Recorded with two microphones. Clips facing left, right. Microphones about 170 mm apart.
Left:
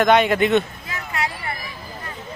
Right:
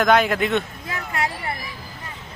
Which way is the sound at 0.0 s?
Centre (ahead or behind).